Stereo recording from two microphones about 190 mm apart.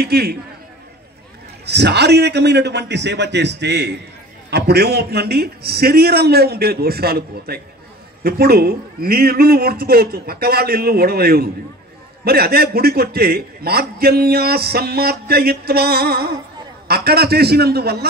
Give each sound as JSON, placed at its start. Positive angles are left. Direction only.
{"t": 0.0, "sound": "a man's voice", "side_deg": -55}
{"t": 1.7, "sound": "a man's voice", "side_deg": -60}